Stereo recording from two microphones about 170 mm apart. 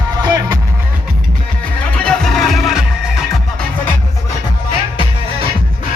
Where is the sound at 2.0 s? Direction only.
Centre (ahead or behind).